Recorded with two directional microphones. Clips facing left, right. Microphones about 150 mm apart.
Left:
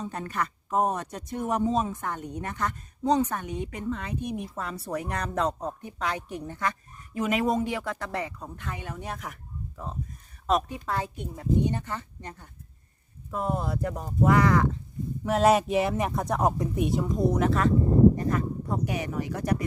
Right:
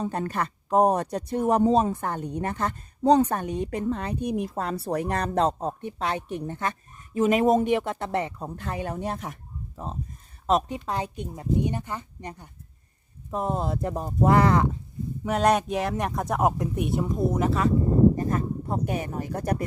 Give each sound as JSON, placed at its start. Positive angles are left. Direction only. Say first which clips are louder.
{"t": 0.0, "sound": "speech", "louder": "right 4 dB", "side_deg": -35}
{"t": 15.2, "sound": "speech", "louder": "left 1 dB", "side_deg": 0}
{"t": 18.3, "sound": "speech", "louder": "right 1 dB", "side_deg": -45}